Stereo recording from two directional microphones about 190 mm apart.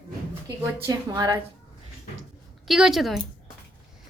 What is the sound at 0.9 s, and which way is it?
Speech, 20° right (ahead or behind).